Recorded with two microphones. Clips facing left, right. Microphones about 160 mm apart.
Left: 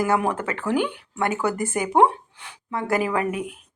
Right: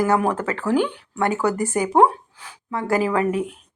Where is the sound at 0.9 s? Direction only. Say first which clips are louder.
Right 3 dB; 15° left (ahead or behind).